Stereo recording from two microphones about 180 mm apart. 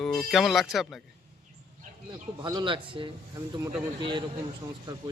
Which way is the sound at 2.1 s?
25° right (ahead or behind).